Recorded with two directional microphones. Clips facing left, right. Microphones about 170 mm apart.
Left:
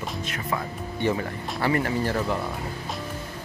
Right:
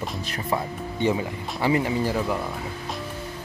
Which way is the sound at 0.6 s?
15° right (ahead or behind).